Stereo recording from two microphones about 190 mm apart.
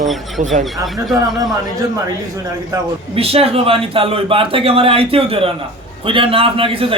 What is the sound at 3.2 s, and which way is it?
A man's voice, 30° right (ahead or behind).